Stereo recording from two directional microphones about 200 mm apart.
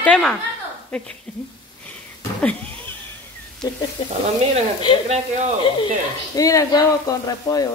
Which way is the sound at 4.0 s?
25° left (ahead or behind).